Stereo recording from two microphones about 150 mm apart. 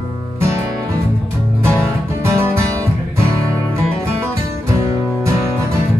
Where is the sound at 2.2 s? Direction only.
20° right (ahead or behind).